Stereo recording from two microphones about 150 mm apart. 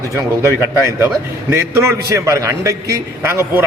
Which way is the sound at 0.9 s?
15° right (ahead or behind).